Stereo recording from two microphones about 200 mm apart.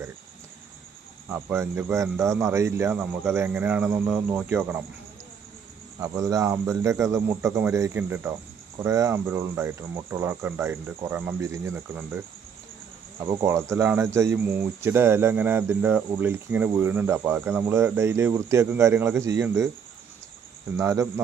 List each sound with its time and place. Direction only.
1.3 s speech: 10° right (ahead or behind)
6.0 s speech: 15° right (ahead or behind)
13.4 s speech: 15° right (ahead or behind)
20.7 s speech: 15° right (ahead or behind)